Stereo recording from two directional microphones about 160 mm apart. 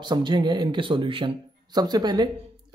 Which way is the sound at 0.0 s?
30° right (ahead or behind).